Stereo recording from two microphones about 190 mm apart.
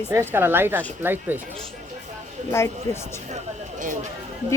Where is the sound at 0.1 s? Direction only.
10° right (ahead or behind).